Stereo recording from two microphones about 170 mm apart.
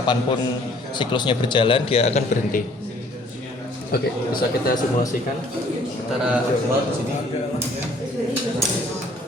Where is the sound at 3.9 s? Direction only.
65° left (ahead or behind).